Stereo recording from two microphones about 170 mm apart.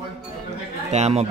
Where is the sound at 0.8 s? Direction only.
40° right (ahead or behind).